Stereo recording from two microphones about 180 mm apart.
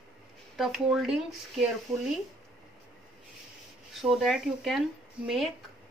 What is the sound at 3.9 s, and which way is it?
Speech, centre (ahead or behind).